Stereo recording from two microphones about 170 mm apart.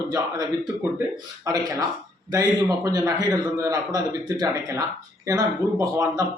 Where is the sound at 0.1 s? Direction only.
20° right (ahead or behind).